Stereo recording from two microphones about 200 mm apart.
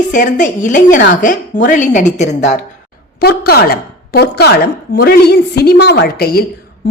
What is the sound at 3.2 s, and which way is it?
Speech, 50° left (ahead or behind).